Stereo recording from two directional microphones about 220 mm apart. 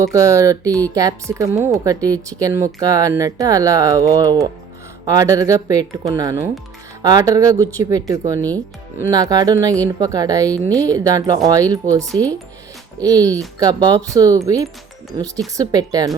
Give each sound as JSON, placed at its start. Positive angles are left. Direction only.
{"t": 0.0, "sound": "speech", "side_deg": -15}